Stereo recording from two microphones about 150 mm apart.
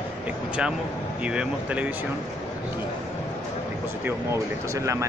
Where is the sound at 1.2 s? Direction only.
10° right (ahead or behind).